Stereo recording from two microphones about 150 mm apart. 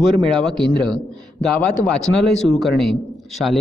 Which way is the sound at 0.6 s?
30° right (ahead or behind).